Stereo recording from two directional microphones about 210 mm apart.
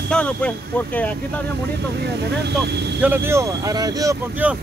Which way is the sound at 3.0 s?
10° right (ahead or behind).